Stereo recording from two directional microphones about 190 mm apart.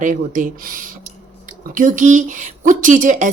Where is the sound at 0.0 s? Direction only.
45° right (ahead or behind).